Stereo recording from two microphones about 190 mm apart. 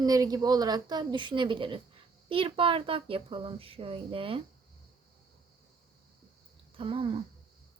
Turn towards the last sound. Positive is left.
turn(degrees=-30)  # may be behind; listen again after turning